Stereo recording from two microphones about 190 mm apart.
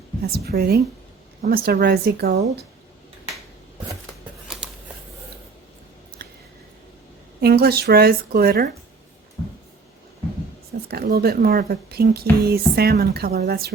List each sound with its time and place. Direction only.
0.3 s speech: 55° right (ahead or behind)
6.2 s a sound: 55° right (ahead or behind)
7.4 s speech: 55° right (ahead or behind)
10.8 s speech: 55° right (ahead or behind)